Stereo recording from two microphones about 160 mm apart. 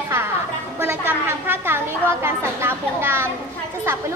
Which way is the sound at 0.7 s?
15° right (ahead or behind).